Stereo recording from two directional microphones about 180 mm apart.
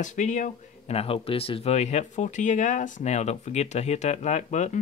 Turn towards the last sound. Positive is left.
turn(degrees=40)  # may be behind; listen again after turning